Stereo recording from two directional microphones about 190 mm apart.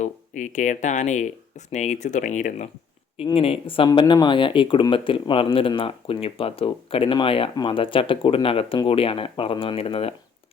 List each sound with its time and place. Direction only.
0.0 s speech: 40° left (ahead or behind)